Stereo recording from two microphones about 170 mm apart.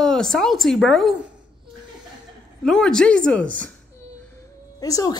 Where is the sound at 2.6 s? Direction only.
5° left (ahead or behind).